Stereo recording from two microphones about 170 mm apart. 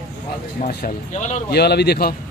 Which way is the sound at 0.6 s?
55° left (ahead or behind).